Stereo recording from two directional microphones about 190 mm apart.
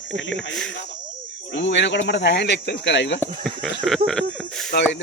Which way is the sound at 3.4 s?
Centre (ahead or behind).